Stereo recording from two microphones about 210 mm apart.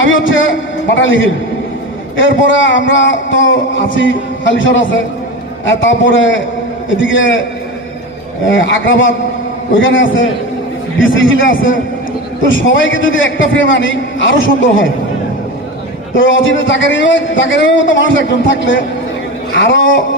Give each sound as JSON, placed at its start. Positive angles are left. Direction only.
{"t": 0.0, "sound": "speech", "side_deg": 65}
{"t": 8.4, "sound": "speech", "side_deg": 65}
{"t": 16.1, "sound": "speech", "side_deg": 65}